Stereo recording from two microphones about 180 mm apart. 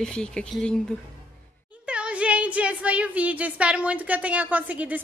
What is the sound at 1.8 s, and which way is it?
Speech, 5° right (ahead or behind).